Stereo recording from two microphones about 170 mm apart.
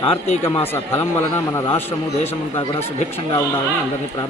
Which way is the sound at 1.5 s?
15° left (ahead or behind).